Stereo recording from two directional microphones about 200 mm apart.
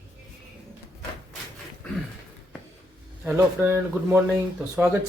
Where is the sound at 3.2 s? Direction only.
10° right (ahead or behind).